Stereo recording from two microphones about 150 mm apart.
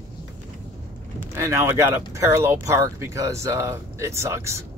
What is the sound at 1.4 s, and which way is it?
Speech, 15° right (ahead or behind).